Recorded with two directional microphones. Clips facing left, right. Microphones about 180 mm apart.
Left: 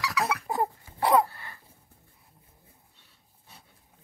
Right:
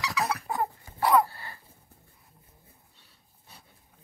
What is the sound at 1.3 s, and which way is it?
Throat clearing, 35° right (ahead or behind).